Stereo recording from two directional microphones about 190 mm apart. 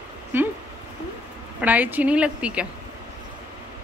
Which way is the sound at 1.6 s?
10° right (ahead or behind).